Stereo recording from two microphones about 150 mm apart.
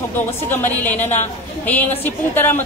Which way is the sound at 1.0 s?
50° left (ahead or behind).